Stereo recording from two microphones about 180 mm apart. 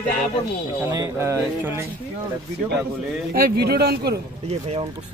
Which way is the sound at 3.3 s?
60° right (ahead or behind).